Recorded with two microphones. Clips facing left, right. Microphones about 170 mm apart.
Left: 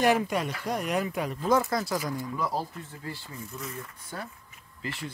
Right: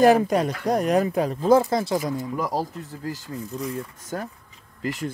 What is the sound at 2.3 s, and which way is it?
Speech, 40° right (ahead or behind).